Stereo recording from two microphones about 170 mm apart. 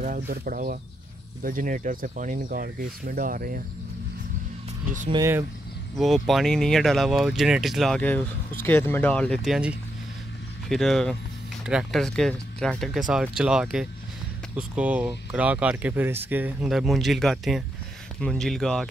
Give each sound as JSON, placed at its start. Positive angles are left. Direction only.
{"t": 0.0, "sound": "speech", "side_deg": -55}
{"t": 5.1, "sound": "speech", "side_deg": -20}
{"t": 5.9, "sound": "speech", "side_deg": 0}